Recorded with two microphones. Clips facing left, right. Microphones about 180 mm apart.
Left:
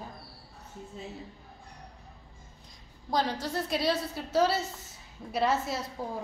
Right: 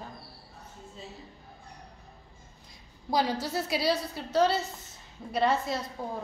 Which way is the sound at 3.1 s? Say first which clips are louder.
Right 2 dB; 10° right (ahead or behind).